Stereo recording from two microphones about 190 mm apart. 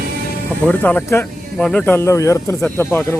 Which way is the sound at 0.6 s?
10° left (ahead or behind).